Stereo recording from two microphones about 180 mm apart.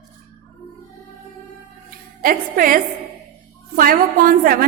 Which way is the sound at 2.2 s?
50° right (ahead or behind).